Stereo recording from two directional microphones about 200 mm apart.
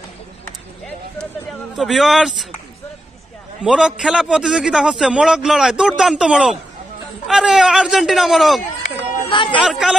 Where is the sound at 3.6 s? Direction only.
5° right (ahead or behind).